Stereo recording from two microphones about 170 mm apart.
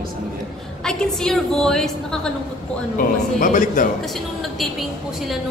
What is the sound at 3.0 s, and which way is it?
Speech, 55° left (ahead or behind).